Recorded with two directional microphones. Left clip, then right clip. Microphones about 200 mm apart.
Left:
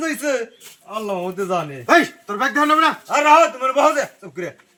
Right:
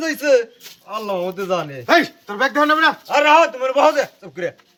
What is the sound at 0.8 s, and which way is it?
Speech, 40° right (ahead or behind).